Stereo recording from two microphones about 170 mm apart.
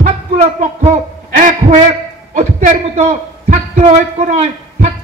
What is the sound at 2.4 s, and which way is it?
Speech, 50° right (ahead or behind).